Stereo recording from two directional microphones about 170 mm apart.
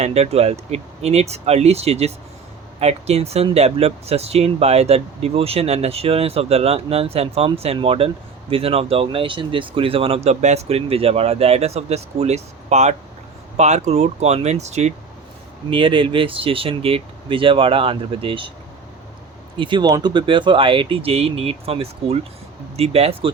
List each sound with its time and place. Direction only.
0.0 s speech: 40° right (ahead or behind)
15.7 s speech: 30° right (ahead or behind)
19.5 s speech: 30° right (ahead or behind)